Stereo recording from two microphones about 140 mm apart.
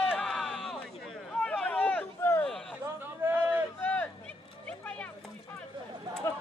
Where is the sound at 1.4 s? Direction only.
10° left (ahead or behind).